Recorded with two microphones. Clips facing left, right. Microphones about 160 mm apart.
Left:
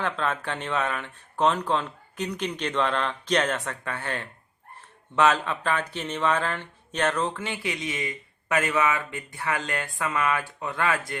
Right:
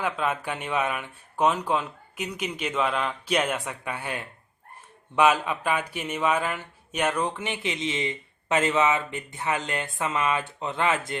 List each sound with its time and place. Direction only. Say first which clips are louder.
0.0 s speech: right 1 dB; 10° right (ahead or behind)